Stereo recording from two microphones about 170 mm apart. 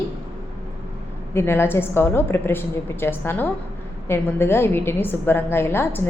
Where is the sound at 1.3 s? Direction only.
15° left (ahead or behind).